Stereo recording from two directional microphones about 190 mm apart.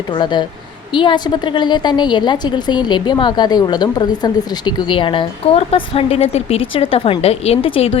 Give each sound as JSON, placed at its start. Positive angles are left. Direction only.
{"t": 0.1, "sound": "a woman's voice", "side_deg": 25}